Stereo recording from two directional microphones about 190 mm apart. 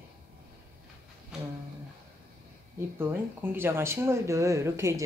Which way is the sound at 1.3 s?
5° right (ahead or behind).